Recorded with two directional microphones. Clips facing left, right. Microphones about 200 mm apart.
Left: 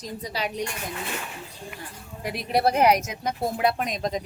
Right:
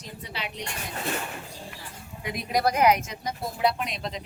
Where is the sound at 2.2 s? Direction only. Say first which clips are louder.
Left 2 dB; 30° left (ahead or behind).